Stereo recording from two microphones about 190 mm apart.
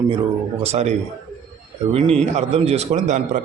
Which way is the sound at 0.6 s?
35° right (ahead or behind).